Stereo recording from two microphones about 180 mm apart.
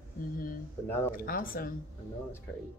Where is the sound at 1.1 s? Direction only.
50° left (ahead or behind).